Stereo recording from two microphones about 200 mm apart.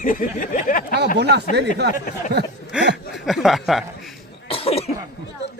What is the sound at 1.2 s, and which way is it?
Speech, 55° right (ahead or behind).